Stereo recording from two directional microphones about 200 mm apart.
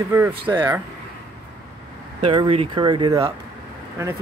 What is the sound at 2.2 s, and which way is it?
Speech, 25° right (ahead or behind).